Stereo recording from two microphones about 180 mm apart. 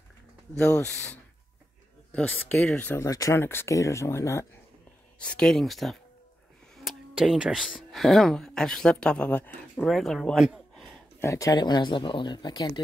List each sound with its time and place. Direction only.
0.6 s speech: 5° left (ahead or behind)
2.1 s speech: 10° left (ahead or behind)
5.2 s speech: 5° left (ahead or behind)
11.1 s speech: 15° left (ahead or behind)